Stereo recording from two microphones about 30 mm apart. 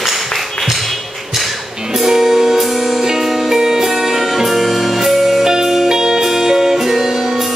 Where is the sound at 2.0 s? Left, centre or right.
Centre.